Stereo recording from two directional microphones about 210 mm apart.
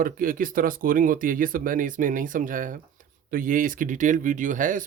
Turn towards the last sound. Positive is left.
turn(degrees=-40)  # may be behind; listen again after turning